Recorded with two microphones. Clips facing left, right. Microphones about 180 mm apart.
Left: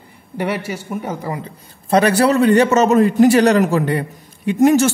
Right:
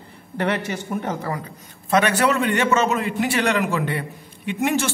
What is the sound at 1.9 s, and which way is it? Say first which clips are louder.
A man's voice: left 5 dB; 35° left (ahead or behind).